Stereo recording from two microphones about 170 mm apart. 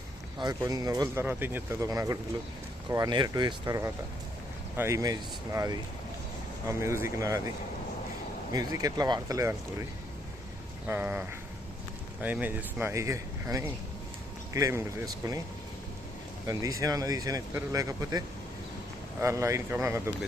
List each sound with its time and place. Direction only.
0.3 s speech: 20° right (ahead or behind)
8.5 s speech: 20° right (ahead or behind)
10.8 s speech: 10° right (ahead or behind)
16.5 s speech: 20° right (ahead or behind)
19.2 s speech: 15° right (ahead or behind)